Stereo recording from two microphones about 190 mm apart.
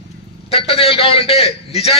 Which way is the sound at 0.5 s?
30° left (ahead or behind).